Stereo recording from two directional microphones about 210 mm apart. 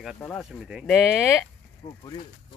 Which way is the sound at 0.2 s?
Centre (ahead or behind).